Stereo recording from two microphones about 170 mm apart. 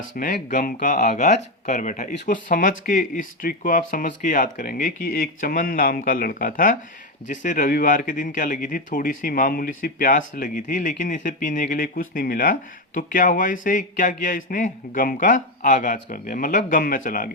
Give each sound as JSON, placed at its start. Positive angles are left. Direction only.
{"t": 0.1, "sound": "speech", "side_deg": 50}